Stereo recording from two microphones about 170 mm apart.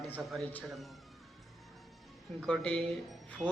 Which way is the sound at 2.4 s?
5° left (ahead or behind).